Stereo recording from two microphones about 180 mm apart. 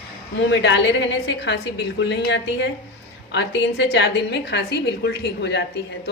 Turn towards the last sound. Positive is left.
turn(degrees=75)  # may be behind; listen again after turning